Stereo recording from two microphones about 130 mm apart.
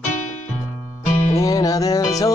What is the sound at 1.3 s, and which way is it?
Speech, 25° left (ahead or behind).